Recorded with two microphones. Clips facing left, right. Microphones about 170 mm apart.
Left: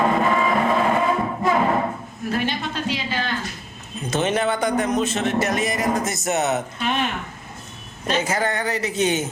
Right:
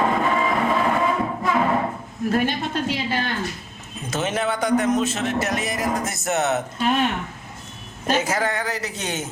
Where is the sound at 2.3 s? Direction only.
50° right (ahead or behind).